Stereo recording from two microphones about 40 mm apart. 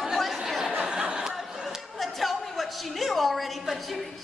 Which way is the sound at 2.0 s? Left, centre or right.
Centre.